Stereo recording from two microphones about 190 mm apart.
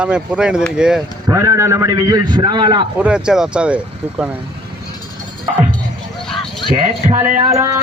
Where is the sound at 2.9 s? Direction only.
5° right (ahead or behind).